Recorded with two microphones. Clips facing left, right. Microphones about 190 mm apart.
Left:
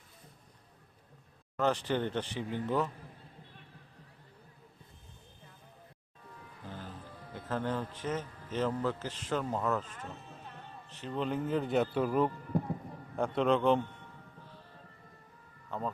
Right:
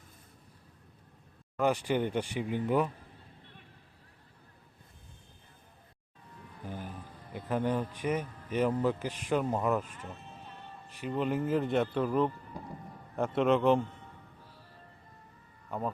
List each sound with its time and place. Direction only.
1.5 s speech: 10° right (ahead or behind)
6.7 s music: 15° right (ahead or behind)
7.3 s speech: 15° right (ahead or behind); by 12.3 s 5° left (ahead or behind)
12.5 s a sound: 55° left (ahead or behind)
13.1 s speech: centre (ahead or behind)
15.7 s speech: 10° right (ahead or behind)